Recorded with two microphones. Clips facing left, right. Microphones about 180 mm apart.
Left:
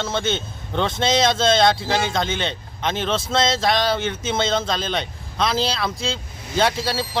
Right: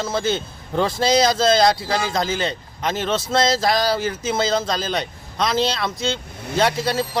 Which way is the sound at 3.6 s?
Centre (ahead or behind).